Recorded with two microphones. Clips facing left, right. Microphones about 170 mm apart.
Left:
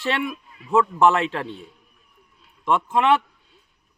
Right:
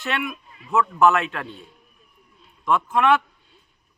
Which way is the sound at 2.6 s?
25° left (ahead or behind).